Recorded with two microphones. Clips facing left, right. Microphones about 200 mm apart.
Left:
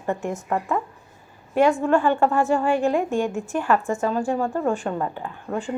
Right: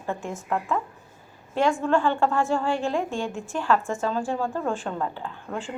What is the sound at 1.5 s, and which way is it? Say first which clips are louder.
A woman's voice: left 4 dB; 15° left (ahead or behind).